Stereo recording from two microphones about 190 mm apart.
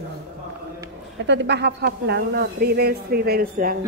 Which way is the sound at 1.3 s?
65° right (ahead or behind).